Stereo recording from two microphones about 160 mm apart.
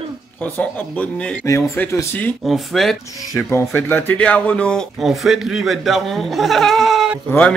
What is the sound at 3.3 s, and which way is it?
Speech, 15° left (ahead or behind).